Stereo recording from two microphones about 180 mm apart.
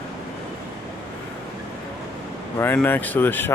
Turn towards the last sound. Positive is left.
turn(degrees=10)  # may be behind; listen again after turning